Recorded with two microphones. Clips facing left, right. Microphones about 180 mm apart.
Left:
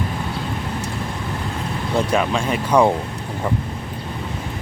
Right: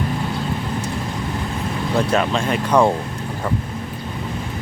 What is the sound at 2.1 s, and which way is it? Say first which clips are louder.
Speech: right 1 dB; 10° left (ahead or behind).